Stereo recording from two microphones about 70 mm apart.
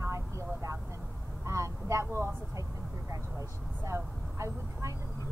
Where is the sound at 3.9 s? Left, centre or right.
Right.